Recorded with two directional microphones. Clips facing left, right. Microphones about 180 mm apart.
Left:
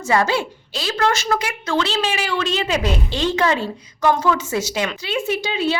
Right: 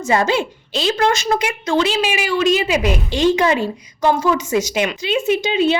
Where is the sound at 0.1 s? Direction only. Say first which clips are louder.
Right 2 dB; 20° right (ahead or behind).